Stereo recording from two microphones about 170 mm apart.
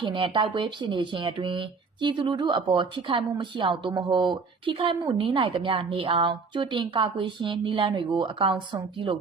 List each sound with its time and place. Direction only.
0.0 s speech: 30° right (ahead or behind)